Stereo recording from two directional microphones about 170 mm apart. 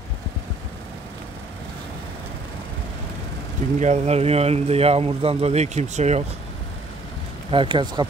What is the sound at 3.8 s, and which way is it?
A man's voice, 40° right (ahead or behind).